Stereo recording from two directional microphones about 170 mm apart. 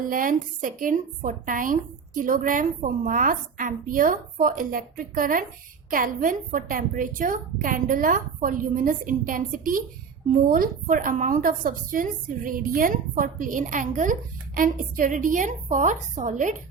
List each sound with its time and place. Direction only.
0.0 s a woman's voice: 55° right (ahead or behind)